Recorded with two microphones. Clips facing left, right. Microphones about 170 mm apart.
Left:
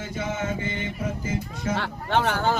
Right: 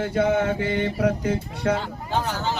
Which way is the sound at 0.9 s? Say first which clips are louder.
Right 7 dB; 70° right (ahead or behind).